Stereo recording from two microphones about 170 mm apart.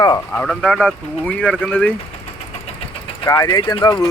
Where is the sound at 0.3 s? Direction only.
5° left (ahead or behind).